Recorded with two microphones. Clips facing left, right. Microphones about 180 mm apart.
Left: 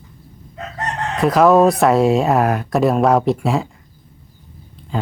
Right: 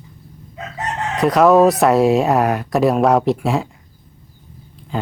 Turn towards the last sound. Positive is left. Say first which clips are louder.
# even
turn(degrees=0)  # may be behind; listen again after turning